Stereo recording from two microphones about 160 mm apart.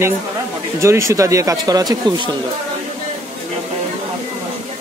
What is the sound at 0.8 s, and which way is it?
Speech, 20° right (ahead or behind).